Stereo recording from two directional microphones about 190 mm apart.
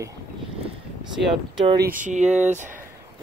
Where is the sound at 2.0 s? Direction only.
40° right (ahead or behind).